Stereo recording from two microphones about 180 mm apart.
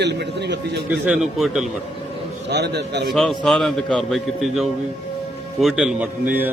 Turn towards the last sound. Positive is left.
turn(degrees=-10)  # may be behind; listen again after turning